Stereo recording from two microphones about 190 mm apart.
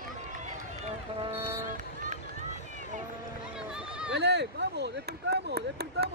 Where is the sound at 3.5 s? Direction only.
5° right (ahead or behind).